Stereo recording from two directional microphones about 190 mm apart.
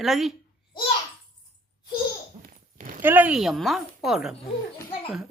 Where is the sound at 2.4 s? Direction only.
45° right (ahead or behind).